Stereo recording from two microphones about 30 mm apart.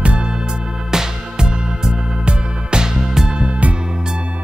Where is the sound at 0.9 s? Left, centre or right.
Right.